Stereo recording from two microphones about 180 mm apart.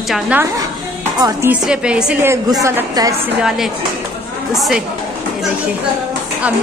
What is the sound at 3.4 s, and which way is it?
A woman's voice, centre (ahead or behind).